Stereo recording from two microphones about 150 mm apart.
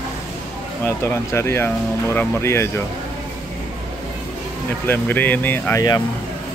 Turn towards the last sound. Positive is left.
turn(degrees=15)  # may be behind; listen again after turning